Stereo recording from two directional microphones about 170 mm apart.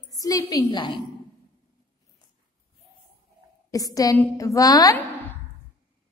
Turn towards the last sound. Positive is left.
turn(degrees=20)  # may be behind; listen again after turning